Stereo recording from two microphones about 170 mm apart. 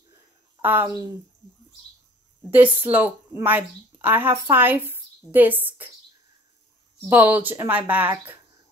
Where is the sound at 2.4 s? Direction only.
10° right (ahead or behind).